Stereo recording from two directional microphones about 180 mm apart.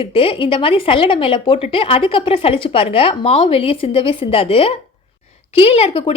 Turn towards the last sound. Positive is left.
turn(degrees=30)  # may be behind; listen again after turning